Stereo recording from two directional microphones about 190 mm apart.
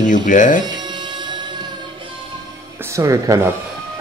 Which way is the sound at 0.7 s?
20° right (ahead or behind).